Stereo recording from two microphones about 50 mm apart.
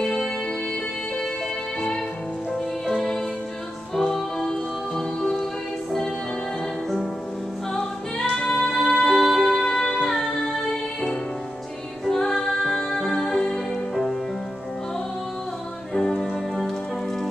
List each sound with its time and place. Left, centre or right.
0.0 s music: centre
3.9 s music: centre
7.7 s music: centre
12.1 s music: centre
15.9 s music: centre